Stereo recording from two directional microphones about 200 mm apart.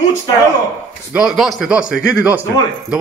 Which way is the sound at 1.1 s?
5° right (ahead or behind).